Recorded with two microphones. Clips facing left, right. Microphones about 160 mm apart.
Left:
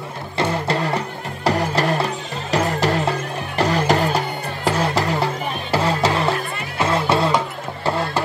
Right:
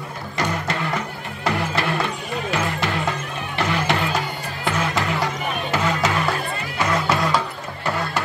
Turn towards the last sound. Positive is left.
turn(degrees=25)  # may be behind; listen again after turning